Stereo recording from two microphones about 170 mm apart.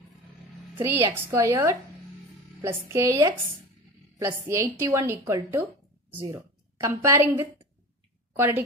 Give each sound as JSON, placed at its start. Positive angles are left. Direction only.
{"t": 0.7, "sound": "a woman's voice", "side_deg": -15}